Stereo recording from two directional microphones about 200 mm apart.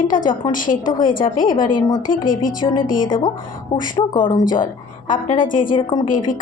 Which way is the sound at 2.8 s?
45° left (ahead or behind).